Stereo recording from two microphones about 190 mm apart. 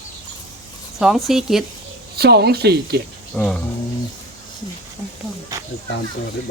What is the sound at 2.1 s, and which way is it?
Speech, 60° right (ahead or behind).